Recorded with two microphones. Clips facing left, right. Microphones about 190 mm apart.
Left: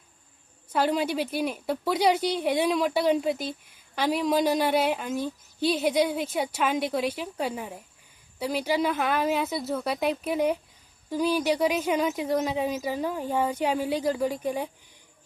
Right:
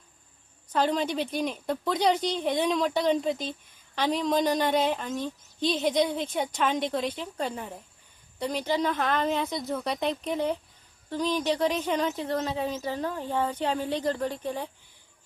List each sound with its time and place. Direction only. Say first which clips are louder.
0.7 s a woman's voice: left 1 dB; 10° left (ahead or behind)